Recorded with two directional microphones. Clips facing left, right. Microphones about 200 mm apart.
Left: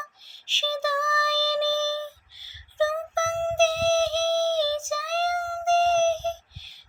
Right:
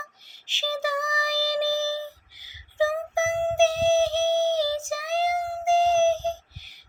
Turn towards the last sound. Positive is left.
turn(degrees=-15)  # may be behind; listen again after turning